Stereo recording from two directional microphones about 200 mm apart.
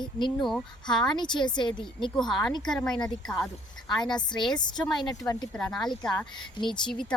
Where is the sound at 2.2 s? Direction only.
Centre (ahead or behind).